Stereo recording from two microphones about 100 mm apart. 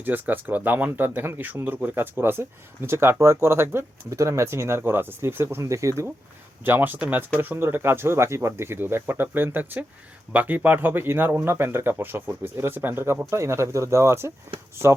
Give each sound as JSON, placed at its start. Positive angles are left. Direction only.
{"t": 0.0, "sound": "speech", "side_deg": -20}
{"t": 6.7, "sound": "speech", "side_deg": -20}